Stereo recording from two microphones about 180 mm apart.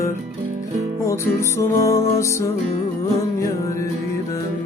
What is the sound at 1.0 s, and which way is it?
Music, 15° left (ahead or behind).